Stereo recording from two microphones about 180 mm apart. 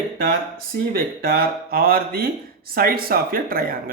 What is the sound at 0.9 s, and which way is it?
Speech, 55° right (ahead or behind).